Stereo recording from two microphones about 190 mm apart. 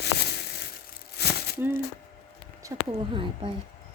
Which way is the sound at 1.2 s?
60° left (ahead or behind).